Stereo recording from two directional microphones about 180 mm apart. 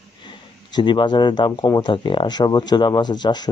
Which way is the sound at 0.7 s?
25° left (ahead or behind).